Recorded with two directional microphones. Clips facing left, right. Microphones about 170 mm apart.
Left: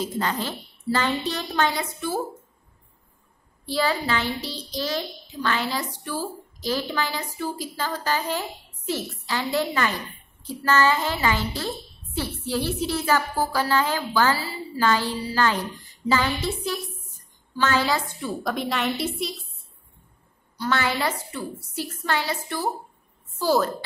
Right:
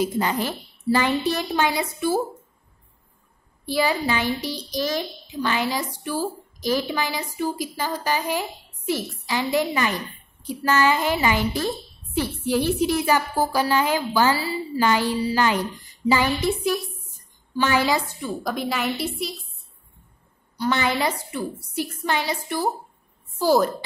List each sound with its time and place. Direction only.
0.0 s a child's voice: 15° right (ahead or behind)
3.6 s a child's voice: 15° right (ahead or behind)
18.2 s a woman's voice: centre (ahead or behind)
20.5 s a child's voice: 15° right (ahead or behind)